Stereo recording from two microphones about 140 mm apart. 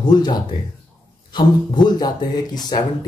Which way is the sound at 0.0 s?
30° left (ahead or behind).